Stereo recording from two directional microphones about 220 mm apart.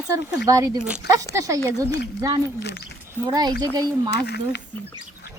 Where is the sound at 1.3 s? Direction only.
15° right (ahead or behind).